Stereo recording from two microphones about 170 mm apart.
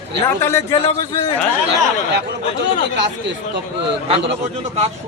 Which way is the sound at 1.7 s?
90° right.